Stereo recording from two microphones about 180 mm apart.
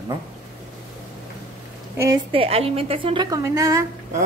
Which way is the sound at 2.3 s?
30° right (ahead or behind).